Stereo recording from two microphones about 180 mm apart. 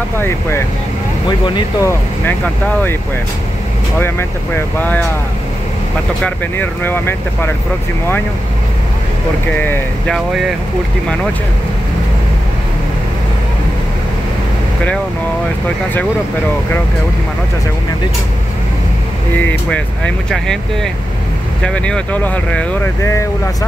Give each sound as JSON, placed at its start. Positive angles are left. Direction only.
{"t": 1.4, "sound": "speech", "side_deg": 15}
{"t": 4.0, "sound": "speech", "side_deg": 15}
{"t": 6.2, "sound": "speech", "side_deg": 10}
{"t": 9.6, "sound": "speech", "side_deg": 5}
{"t": 20.2, "sound": "speech", "side_deg": 5}